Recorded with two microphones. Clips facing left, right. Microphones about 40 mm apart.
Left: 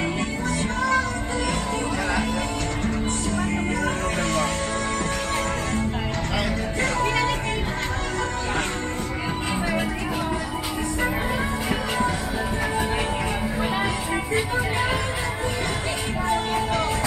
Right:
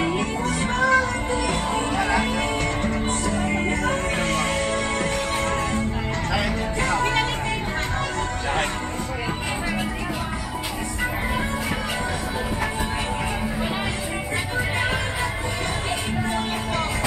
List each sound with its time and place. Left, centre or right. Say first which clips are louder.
0.6 s music: right 4 dB; centre
2.0 s music: right 3 dB; centre
7.0 s music: even; right